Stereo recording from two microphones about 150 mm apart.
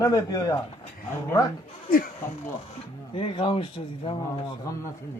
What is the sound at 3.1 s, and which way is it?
A man's voice, 35° left (ahead or behind).